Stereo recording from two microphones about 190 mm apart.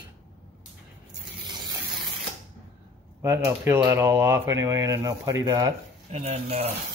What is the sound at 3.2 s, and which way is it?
Speech, 15° right (ahead or behind).